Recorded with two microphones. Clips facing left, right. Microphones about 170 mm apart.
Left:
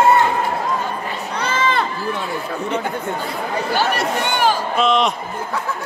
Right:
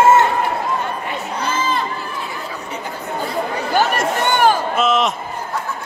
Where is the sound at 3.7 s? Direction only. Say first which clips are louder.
Right 3 dB; 50° right (ahead or behind).